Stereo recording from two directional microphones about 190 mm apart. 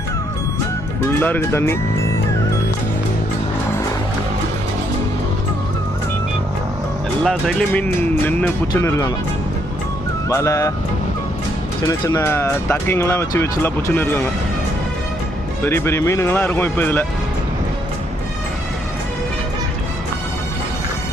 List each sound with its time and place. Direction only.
1.2 s speech: 10° left (ahead or behind)
7.3 s speech: 5° left (ahead or behind)
8.7 s speech: 15° left (ahead or behind)
10.2 s speech: 15° left (ahead or behind)
11.8 s speech: 20° left (ahead or behind)
15.6 s speech: 15° left (ahead or behind)